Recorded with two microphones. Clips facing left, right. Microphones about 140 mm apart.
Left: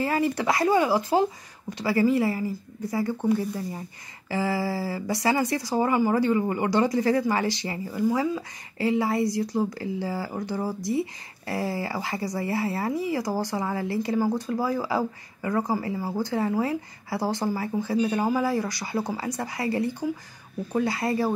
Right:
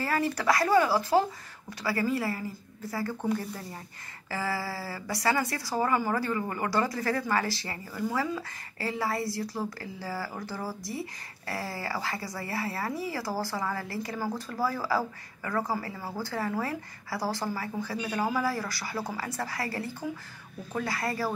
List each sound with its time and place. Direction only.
0.0 s speech: 20° left (ahead or behind)
4.3 s speech: 20° left (ahead or behind)